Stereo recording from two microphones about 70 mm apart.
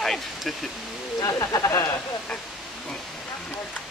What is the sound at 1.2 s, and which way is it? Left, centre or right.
Speech, left.